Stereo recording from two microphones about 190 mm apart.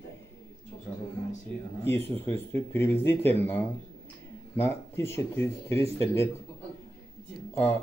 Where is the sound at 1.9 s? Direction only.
10° left (ahead or behind).